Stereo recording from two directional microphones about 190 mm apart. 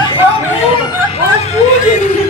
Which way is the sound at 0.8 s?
30° left (ahead or behind).